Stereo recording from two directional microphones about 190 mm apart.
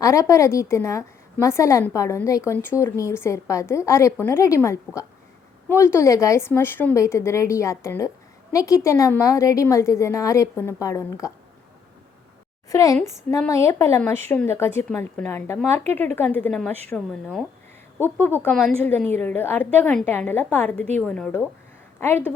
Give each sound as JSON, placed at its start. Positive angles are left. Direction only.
{"t": 0.0, "sound": "a woman's voice", "side_deg": 15}
{"t": 12.7, "sound": "a woman's voice", "side_deg": 15}